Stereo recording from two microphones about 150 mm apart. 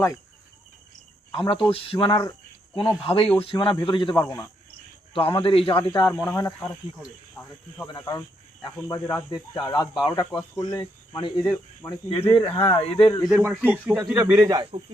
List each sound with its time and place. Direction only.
1.3 s speech: 35° left (ahead or behind)
5.1 s speech: 35° left (ahead or behind)
6.2 s speech: 15° left (ahead or behind)
7.9 s speech: 25° left (ahead or behind)
9.6 s speech: 25° left (ahead or behind)
12.3 s speech: 35° left (ahead or behind)
13.2 s speech: centre (ahead or behind)
14.2 s speech: 25° right (ahead or behind)